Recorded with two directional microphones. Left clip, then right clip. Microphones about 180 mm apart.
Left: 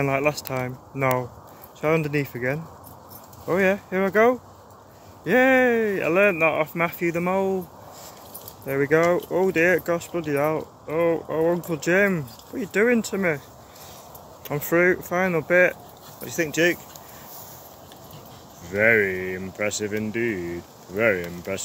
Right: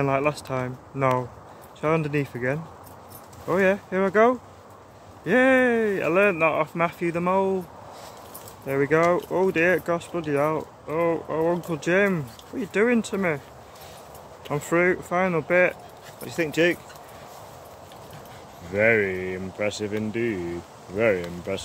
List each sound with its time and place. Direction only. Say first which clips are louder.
0.0 s speech: left 1 dB; 10° right (ahead or behind)
8.6 s speech: left 1 dB; 10° right (ahead or behind)
14.5 s speech: left 2 dB; 10° right (ahead or behind)
18.7 s speech: left 2 dB; 20° right (ahead or behind)